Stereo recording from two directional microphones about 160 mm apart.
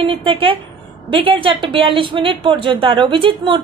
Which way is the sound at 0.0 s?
35° right (ahead or behind).